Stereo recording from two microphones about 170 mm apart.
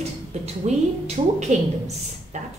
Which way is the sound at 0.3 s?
40° right (ahead or behind).